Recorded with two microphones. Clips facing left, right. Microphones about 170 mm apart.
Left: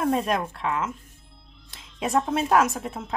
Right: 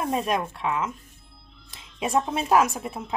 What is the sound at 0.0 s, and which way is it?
A woman's voice, centre (ahead or behind).